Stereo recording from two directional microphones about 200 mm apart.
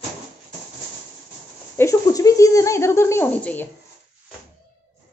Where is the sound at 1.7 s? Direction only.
15° left (ahead or behind).